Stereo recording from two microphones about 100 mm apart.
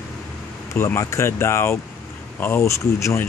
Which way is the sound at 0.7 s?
25° left (ahead or behind).